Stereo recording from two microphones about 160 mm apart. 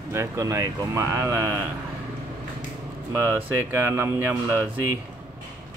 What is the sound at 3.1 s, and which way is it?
Speech, 15° right (ahead or behind).